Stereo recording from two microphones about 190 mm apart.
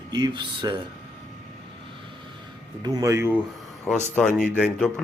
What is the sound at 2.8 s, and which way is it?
Speech, 20° right (ahead or behind).